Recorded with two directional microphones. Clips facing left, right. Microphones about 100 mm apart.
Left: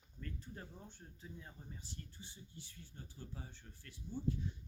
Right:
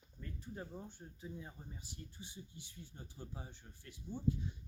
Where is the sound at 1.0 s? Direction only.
15° right (ahead or behind).